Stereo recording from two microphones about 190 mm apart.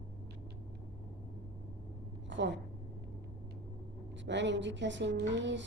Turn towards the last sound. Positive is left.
turn(degrees=-70)  # may be behind; listen again after turning